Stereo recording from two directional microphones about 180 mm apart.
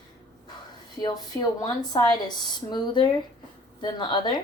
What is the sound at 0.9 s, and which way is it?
Speech, 20° left (ahead or behind).